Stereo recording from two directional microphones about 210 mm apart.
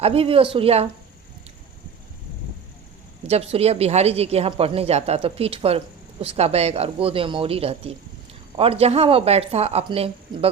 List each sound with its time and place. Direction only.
0.0 s a woman's voice: 25° right (ahead or behind)
3.2 s a woman's voice: 30° right (ahead or behind)